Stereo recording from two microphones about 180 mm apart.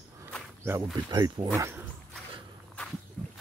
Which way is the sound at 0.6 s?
15° right (ahead or behind).